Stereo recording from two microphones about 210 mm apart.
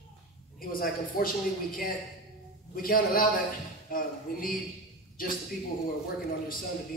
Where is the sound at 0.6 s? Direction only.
45° left (ahead or behind).